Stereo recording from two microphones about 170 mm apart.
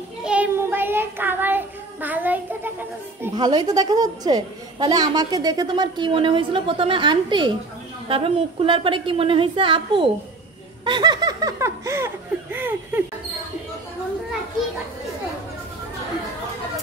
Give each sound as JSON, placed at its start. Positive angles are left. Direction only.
{"t": 0.2, "sound": "child singing", "side_deg": -5}
{"t": 3.3, "sound": "a woman's voice", "side_deg": -25}
{"t": 12.5, "sound": "laughter", "side_deg": -10}